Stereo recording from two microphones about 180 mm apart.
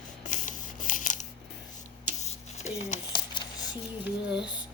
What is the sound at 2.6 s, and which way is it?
Speech, 40° left (ahead or behind).